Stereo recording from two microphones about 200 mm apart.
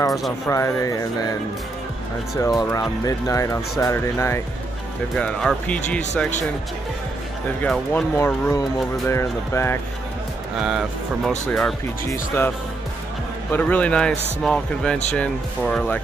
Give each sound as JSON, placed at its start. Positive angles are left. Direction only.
{"t": 0.5, "sound": "speech", "side_deg": 15}
{"t": 2.3, "sound": "speech", "side_deg": 15}
{"t": 5.1, "sound": "speech", "side_deg": 5}
{"t": 7.6, "sound": "speech", "side_deg": 10}
{"t": 10.6, "sound": "speech", "side_deg": -5}
{"t": 12.1, "sound": "speech", "side_deg": 10}